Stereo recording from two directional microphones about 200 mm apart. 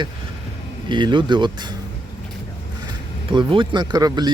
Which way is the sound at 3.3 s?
25° right (ahead or behind).